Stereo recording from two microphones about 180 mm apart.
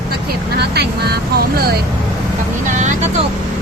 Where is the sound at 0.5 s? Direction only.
65° right (ahead or behind).